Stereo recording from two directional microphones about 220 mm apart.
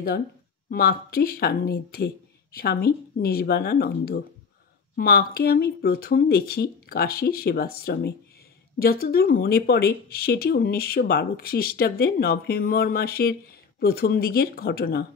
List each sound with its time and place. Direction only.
0.7 s speech: 45° left (ahead or behind)